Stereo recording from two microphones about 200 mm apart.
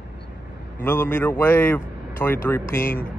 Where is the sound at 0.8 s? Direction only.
10° left (ahead or behind).